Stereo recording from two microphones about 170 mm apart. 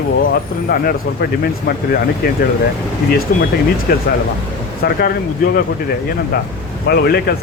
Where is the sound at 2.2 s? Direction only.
65° left (ahead or behind).